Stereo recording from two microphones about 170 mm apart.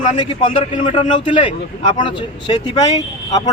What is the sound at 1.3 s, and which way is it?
A man's voice, 30° left (ahead or behind).